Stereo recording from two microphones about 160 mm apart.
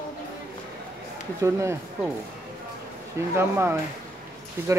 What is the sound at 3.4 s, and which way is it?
Speech, 15° right (ahead or behind).